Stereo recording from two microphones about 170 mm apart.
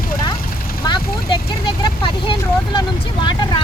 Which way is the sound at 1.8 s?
30° left (ahead or behind).